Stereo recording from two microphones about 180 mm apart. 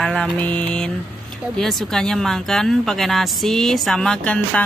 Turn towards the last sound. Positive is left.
turn(degrees=5)  # may be behind; listen again after turning